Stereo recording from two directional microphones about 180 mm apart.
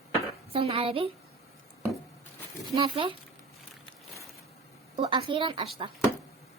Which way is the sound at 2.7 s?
30° right (ahead or behind).